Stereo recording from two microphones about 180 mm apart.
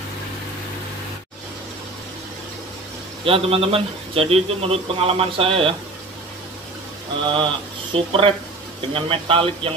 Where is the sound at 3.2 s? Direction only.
30° right (ahead or behind).